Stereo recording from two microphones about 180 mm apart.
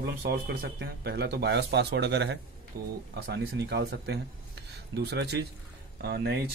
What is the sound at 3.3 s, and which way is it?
Speech, 65° right (ahead or behind).